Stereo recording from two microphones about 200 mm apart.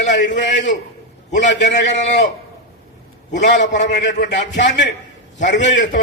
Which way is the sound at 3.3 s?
60° left (ahead or behind).